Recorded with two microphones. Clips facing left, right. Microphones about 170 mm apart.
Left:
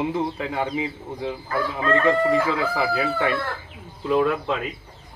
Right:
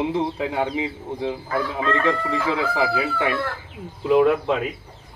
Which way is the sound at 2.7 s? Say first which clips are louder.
Right 1 dB; 15° right (ahead or behind).